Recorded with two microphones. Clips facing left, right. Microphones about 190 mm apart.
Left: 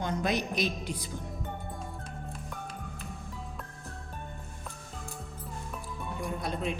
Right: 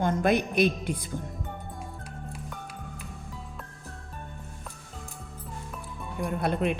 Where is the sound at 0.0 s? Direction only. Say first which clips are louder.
Right 6 dB; 50° right (ahead or behind).